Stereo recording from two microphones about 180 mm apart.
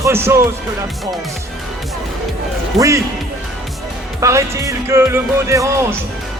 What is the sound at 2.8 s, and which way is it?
Speech, 15° right (ahead or behind).